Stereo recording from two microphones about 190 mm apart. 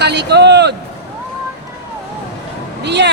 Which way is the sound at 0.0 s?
60° right (ahead or behind).